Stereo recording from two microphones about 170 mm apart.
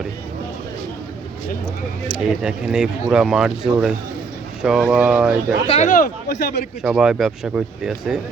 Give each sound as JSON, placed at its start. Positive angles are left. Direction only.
{"t": 2.0, "sound": "speech", "side_deg": -5}
{"t": 5.6, "sound": "speech", "side_deg": 35}
{"t": 5.9, "sound": "a man's voice", "side_deg": 65}
{"t": 6.8, "sound": "speech", "side_deg": -5}